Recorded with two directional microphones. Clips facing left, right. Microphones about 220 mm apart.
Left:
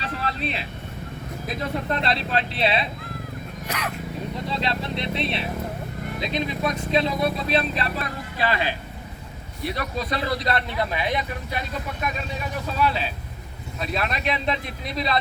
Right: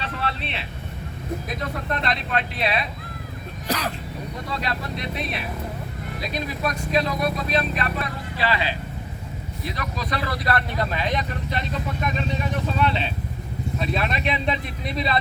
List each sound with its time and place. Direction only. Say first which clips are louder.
0.0 s vehicle: left 1 dB; 40° left (ahead or behind)
1.9 s speech: even; 30° left (ahead or behind)
3.7 s speech: right 5 dB; 35° right (ahead or behind)
4.5 s speech: left 1 dB; 25° left (ahead or behind)
8.4 s speech: even; 50° left (ahead or behind)
9.7 s speech: left 1 dB; 25° left (ahead or behind); by 11.6 s 10° left (ahead or behind)
12.8 s speech: even; 5° left (ahead or behind)